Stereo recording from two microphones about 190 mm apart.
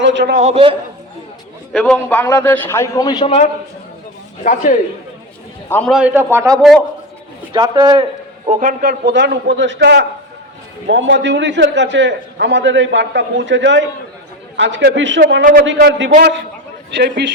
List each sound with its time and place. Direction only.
0.0 s a man's voice: 70° right (ahead or behind)
0.3 s a man's voice: 35° right (ahead or behind)
1.7 s a man's voice: 5° left (ahead or behind); by 3.4 s 30° left (ahead or behind)
4.4 s a man's voice: 40° left (ahead or behind)
5.6 s a man's voice: 10° left (ahead or behind)
5.9 s a man's voice: 5° right (ahead or behind)
8.4 s a man's voice: 40° right (ahead or behind)
9.0 s a man's voice: 65° right (ahead or behind)